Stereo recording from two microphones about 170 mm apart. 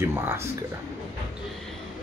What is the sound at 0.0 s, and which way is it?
Speech, 15° right (ahead or behind).